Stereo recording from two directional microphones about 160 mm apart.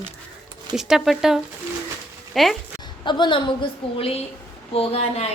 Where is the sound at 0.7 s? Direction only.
5° right (ahead or behind).